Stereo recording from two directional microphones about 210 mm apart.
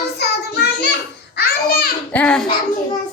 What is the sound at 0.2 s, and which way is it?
Child singing, 50° left (ahead or behind).